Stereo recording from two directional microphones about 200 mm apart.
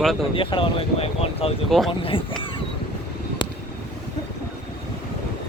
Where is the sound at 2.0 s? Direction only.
25° left (ahead or behind).